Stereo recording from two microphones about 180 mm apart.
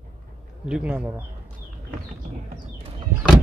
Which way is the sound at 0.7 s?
5° right (ahead or behind).